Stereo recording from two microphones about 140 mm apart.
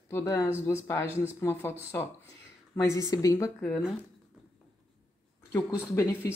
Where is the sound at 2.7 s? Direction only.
25° left (ahead or behind).